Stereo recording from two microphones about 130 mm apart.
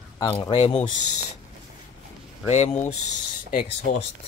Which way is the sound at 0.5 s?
45° left (ahead or behind).